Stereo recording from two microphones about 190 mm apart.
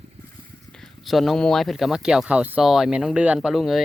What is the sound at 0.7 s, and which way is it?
Speech, centre (ahead or behind).